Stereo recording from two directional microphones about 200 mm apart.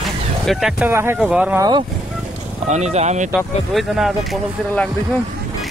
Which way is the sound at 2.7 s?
35° right (ahead or behind).